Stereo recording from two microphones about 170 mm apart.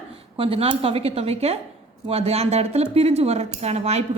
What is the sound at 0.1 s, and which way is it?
Speech, 35° right (ahead or behind).